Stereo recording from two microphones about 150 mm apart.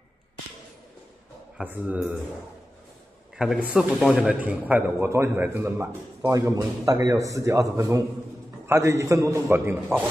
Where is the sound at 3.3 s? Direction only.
5° right (ahead or behind).